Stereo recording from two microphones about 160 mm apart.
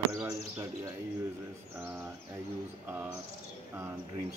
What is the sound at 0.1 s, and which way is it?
Bird, 20° right (ahead or behind).